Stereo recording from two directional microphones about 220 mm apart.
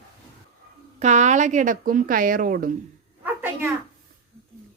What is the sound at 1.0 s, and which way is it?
Speech, 30° right (ahead or behind).